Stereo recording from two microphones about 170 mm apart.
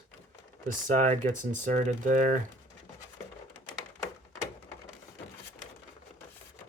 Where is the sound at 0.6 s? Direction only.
45° right (ahead or behind).